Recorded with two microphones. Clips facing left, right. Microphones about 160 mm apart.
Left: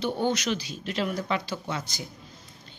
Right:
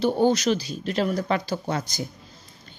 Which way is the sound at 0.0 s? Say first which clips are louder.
Right 6 dB; 40° right (ahead or behind).